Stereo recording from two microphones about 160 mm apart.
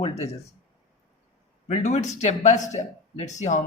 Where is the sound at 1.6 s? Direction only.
50° left (ahead or behind).